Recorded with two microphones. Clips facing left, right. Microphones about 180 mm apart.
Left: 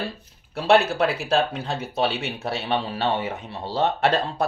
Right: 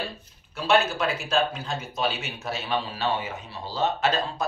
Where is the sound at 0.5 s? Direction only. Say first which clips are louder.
Left 4 dB; 65° left (ahead or behind).